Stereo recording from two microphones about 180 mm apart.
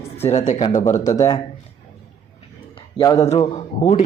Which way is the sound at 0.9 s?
20° left (ahead or behind).